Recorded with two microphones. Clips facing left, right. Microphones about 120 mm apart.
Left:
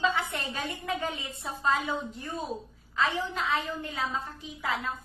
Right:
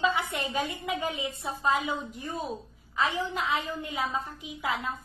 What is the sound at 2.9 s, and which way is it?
A woman's voice, 15° right (ahead or behind).